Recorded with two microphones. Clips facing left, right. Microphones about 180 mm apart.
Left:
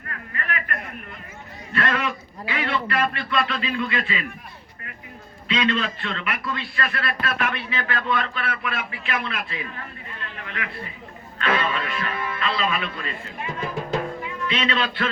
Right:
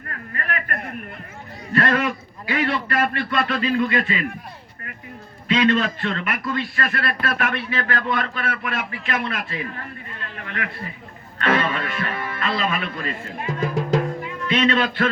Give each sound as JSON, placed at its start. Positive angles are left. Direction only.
{"t": 0.1, "sound": "a man's voice", "side_deg": -40}
{"t": 5.5, "sound": "a man's voice", "side_deg": -45}
{"t": 10.4, "sound": "a sound", "side_deg": -45}
{"t": 11.4, "sound": "a man's voice", "side_deg": -45}